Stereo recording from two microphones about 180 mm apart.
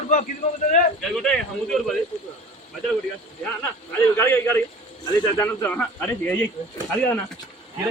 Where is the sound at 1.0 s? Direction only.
5° left (ahead or behind).